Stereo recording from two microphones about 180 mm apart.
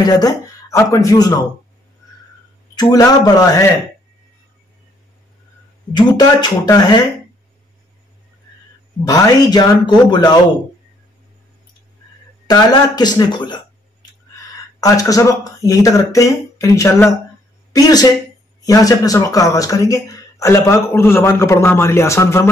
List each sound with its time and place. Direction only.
0.0 s speech: 20° left (ahead or behind)
2.7 s speech: 20° left (ahead or behind)
5.9 s speech: 25° left (ahead or behind)
9.0 s speech: 20° left (ahead or behind)
12.4 s speech: 25° left (ahead or behind)
14.8 s speech: 20° left (ahead or behind)